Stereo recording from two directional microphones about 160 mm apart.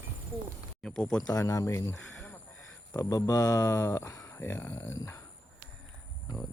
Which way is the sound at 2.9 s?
20° left (ahead or behind).